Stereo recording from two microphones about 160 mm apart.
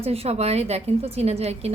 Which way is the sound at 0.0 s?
40° right (ahead or behind).